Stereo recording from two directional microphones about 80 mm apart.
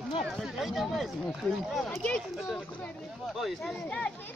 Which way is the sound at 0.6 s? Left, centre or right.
Centre.